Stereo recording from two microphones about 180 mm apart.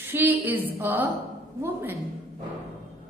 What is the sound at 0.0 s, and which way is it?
A woman's voice, 10° right (ahead or behind).